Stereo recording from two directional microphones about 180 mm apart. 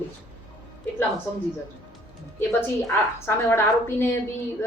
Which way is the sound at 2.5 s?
15° left (ahead or behind).